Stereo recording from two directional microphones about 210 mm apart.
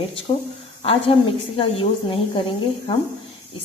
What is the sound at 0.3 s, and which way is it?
Speech, 20° left (ahead or behind).